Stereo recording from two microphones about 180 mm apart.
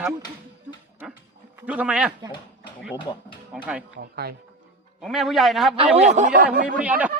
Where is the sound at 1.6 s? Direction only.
5° right (ahead or behind).